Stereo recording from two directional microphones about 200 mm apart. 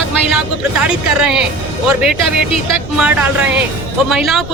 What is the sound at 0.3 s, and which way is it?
Speech, 5° right (ahead or behind).